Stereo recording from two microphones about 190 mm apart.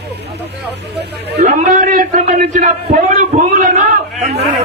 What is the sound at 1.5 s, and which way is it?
A man's voice, 40° right (ahead or behind).